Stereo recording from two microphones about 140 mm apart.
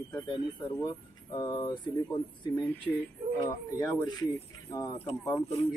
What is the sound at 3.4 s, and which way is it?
A man's voice, 30° left (ahead or behind).